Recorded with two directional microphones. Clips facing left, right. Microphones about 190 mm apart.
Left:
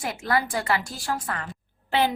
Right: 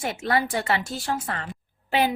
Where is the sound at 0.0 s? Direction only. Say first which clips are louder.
Right 1 dB; 25° right (ahead or behind).